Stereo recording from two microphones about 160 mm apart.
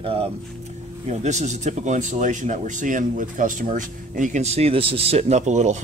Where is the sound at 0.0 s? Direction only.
35° right (ahead or behind).